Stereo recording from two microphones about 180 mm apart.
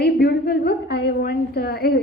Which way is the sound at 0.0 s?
60° left (ahead or behind).